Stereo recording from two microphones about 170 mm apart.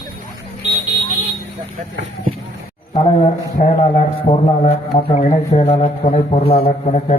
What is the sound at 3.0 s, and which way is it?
A man's voice, 35° left (ahead or behind).